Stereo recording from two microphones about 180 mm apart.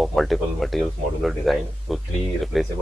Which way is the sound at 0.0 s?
Centre (ahead or behind).